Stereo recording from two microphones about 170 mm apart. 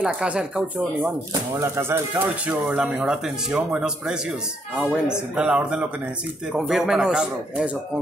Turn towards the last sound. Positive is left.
turn(degrees=-5)  # may be behind; listen again after turning